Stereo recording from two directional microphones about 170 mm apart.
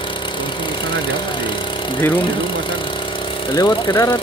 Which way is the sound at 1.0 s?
30° left (ahead or behind).